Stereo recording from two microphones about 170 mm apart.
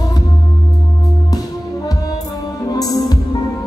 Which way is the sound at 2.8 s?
20° left (ahead or behind).